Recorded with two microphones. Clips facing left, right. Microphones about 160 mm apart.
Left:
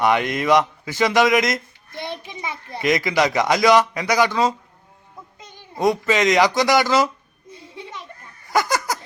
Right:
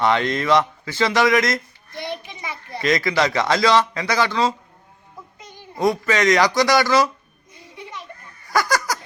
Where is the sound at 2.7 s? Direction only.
20° left (ahead or behind).